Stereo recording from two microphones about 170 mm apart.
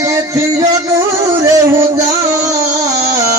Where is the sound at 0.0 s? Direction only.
20° right (ahead or behind).